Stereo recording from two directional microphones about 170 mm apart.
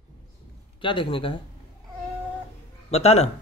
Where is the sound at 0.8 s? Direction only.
30° left (ahead or behind).